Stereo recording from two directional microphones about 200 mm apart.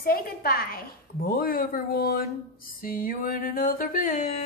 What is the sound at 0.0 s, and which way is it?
A woman's voice, 50° left (ahead or behind).